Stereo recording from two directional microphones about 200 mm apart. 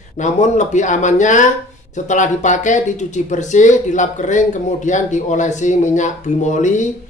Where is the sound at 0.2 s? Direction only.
35° left (ahead or behind).